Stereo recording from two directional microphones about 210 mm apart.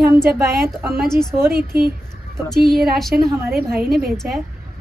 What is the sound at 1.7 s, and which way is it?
Speech, 50° right (ahead or behind).